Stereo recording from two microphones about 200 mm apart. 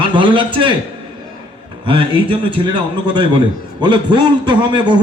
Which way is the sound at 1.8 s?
25° right (ahead or behind).